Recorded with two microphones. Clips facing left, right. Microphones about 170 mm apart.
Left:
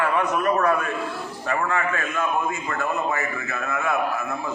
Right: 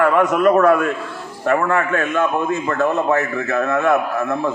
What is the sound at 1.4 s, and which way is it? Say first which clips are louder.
A man's voice: right 7 dB; 60° right (ahead or behind).